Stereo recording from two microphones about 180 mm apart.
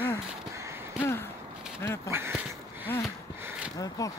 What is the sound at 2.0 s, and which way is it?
Dog, 15° right (ahead or behind).